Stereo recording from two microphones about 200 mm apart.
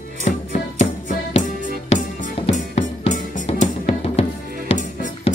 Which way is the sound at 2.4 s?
30° left (ahead or behind).